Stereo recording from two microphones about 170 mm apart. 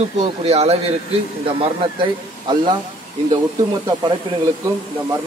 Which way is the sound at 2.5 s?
25° right (ahead or behind).